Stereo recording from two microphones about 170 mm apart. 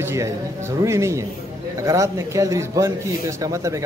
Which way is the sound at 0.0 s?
15° right (ahead or behind).